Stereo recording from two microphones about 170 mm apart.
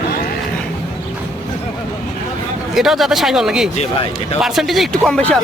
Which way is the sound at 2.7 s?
Centre (ahead or behind).